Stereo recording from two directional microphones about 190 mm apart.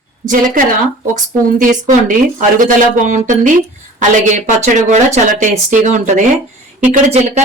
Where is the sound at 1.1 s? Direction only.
45° right (ahead or behind).